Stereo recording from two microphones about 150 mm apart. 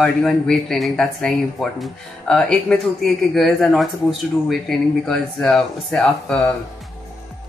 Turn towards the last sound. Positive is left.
turn(degrees=5)  # may be behind; listen again after turning